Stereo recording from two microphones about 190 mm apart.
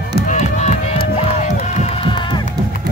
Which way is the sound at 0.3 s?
35° left (ahead or behind).